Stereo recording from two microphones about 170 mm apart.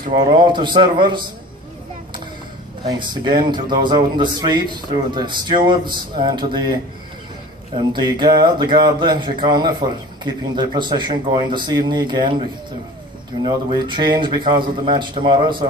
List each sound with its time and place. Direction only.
0.1 s a man's voice: 30° right (ahead or behind)
2.9 s a man's voice: 30° right (ahead or behind)
13.4 s a man's voice: 25° right (ahead or behind)